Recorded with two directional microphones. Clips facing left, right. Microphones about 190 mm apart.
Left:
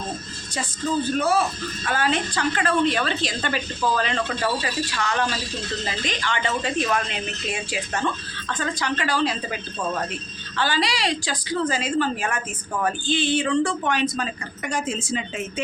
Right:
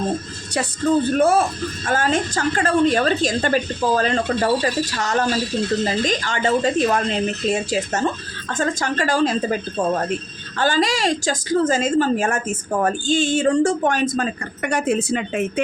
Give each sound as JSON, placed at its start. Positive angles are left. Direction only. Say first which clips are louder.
{"t": 0.5, "sound": "a woman's voice", "louder": "right 7 dB", "side_deg": -55}